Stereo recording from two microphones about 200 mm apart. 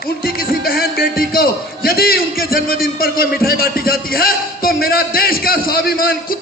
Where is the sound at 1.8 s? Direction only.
50° left (ahead or behind).